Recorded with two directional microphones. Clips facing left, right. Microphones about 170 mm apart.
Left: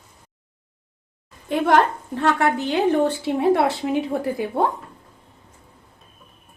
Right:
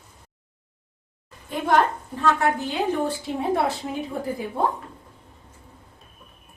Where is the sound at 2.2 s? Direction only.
75° left (ahead or behind).